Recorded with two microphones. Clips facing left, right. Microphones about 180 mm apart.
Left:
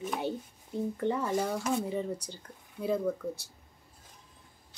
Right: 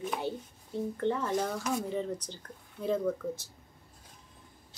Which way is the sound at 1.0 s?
10° left (ahead or behind).